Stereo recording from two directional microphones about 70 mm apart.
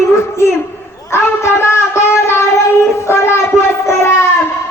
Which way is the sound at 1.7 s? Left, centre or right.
Left.